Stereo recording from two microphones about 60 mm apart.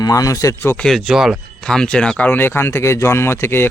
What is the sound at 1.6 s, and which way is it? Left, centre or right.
Speech, centre.